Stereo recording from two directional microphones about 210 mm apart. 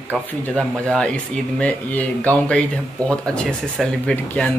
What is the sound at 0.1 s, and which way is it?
Speech, 5° left (ahead or behind).